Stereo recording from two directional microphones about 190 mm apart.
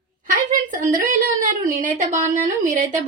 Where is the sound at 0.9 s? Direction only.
45° right (ahead or behind).